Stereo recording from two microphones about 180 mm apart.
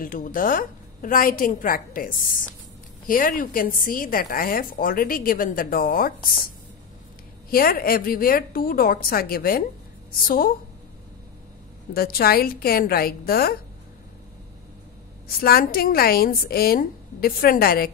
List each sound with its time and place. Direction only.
0.0 s a woman's voice: 50° left (ahead or behind)
11.9 s a woman's voice: 55° left (ahead or behind)
15.4 s a woman's voice: 55° left (ahead or behind)